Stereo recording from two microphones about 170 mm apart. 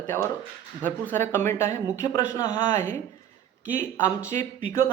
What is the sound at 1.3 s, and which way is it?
Speech, 15° left (ahead or behind).